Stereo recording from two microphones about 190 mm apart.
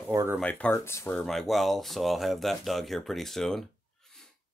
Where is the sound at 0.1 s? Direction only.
15° right (ahead or behind).